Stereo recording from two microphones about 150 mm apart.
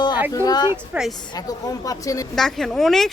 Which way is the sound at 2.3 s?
5° left (ahead or behind).